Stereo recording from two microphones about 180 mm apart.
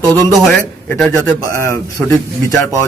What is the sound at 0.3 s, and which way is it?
A man's voice, centre (ahead or behind).